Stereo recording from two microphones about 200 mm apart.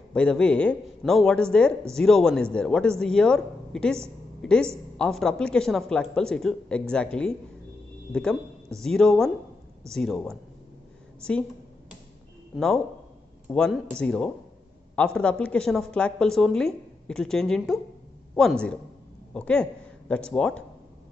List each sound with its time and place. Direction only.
0.1 s a woman's voice: 5° left (ahead or behind)
12.5 s a woman's voice: centre (ahead or behind)